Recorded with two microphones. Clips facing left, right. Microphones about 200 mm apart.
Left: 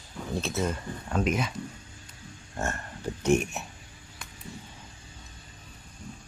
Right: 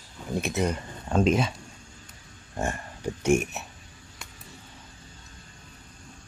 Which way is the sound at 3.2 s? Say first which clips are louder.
Right 1 dB; 10° right (ahead or behind).